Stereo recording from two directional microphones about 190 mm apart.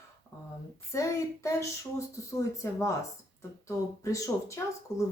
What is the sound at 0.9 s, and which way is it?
Speech, 15° left (ahead or behind).